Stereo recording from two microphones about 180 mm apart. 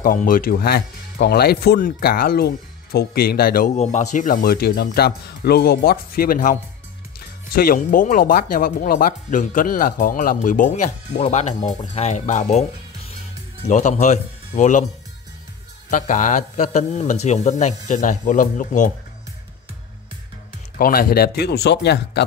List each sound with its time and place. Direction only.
0.0 s speech: 50° left (ahead or behind)
3.7 s speech: 40° left (ahead or behind)
13.7 s speech: 40° left (ahead or behind)
15.9 s speech: 45° left (ahead or behind)
20.7 s speech: 55° left (ahead or behind)